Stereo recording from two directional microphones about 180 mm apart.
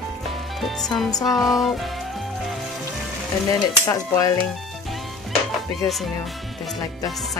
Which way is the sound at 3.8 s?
20° left (ahead or behind).